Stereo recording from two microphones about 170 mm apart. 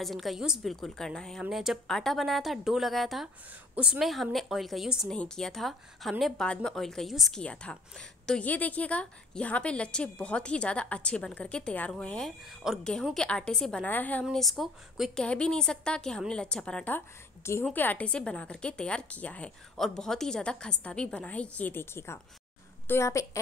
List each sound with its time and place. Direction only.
0.0 s a woman's voice: centre (ahead or behind); by 23.4 s 15° left (ahead or behind)